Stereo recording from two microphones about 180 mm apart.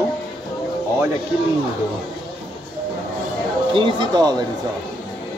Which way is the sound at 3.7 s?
25° right (ahead or behind).